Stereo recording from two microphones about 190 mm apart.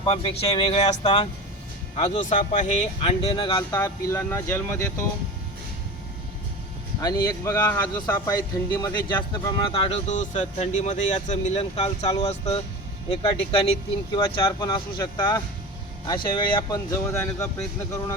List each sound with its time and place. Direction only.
0.0 s speech: 30° left (ahead or behind)
3.8 s speech: 15° left (ahead or behind)
7.0 s speech: 20° left (ahead or behind)